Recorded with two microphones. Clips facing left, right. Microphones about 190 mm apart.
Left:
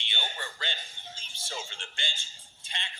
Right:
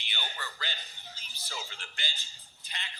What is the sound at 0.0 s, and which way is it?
A man's voice, 25° left (ahead or behind).